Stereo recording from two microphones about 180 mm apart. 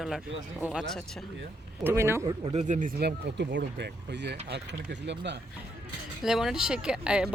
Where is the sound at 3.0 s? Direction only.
65° right (ahead or behind).